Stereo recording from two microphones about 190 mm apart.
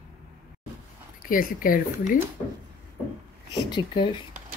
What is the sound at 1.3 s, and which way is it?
Speech, 45° left (ahead or behind).